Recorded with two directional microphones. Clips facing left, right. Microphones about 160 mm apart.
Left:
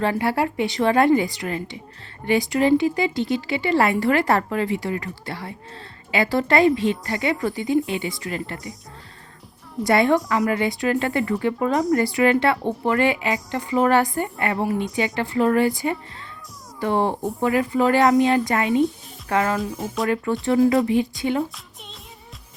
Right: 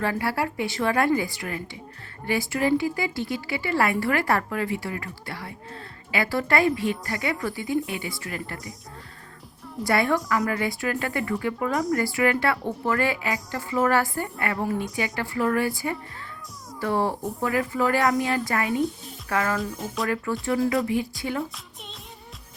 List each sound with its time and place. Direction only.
0.0 s speech: 25° left (ahead or behind)
9.8 s speech: 20° left (ahead or behind)